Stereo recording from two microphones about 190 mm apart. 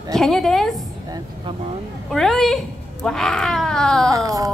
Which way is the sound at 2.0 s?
Centre (ahead or behind).